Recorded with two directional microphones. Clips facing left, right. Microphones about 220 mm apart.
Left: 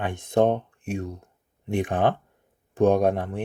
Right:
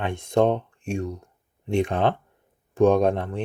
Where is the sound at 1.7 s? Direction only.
15° left (ahead or behind).